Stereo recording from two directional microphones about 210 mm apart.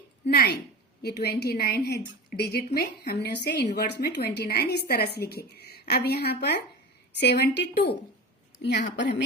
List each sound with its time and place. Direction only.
0.3 s a woman's voice: 50° left (ahead or behind)